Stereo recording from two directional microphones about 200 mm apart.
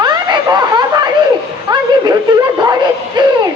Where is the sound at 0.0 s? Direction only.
20° right (ahead or behind).